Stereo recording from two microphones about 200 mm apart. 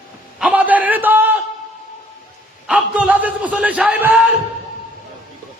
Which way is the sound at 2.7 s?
5° right (ahead or behind).